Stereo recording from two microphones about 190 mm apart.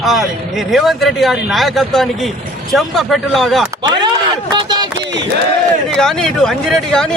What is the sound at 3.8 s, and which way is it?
Speech, 20° right (ahead or behind).